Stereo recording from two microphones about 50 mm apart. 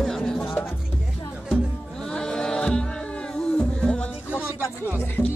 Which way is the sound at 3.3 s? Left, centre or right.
Centre.